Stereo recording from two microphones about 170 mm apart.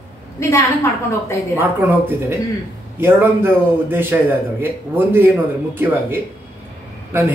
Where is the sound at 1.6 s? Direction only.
10° right (ahead or behind).